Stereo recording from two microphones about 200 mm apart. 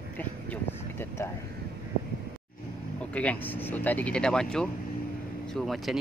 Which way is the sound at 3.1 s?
10° left (ahead or behind).